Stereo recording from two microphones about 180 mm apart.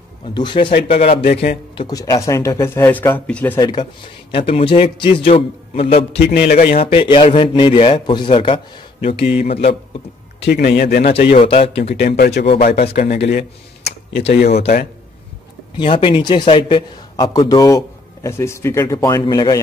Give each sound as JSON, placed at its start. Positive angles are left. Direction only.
{"t": 0.3, "sound": "a man's voice", "side_deg": 25}
{"t": 1.8, "sound": "speech", "side_deg": 20}
{"t": 3.5, "sound": "a man's voice", "side_deg": 25}
{"t": 6.1, "sound": "a man's voice", "side_deg": 65}
{"t": 6.7, "sound": "a man's voice", "side_deg": 30}
{"t": 10.4, "sound": "a man's voice", "side_deg": 65}
{"t": 11.0, "sound": "a man's voice", "side_deg": 35}
{"t": 12.0, "sound": "a man's voice", "side_deg": 60}
{"t": 15.8, "sound": "a man's voice", "side_deg": 30}